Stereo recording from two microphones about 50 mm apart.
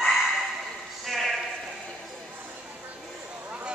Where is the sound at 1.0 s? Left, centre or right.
Centre.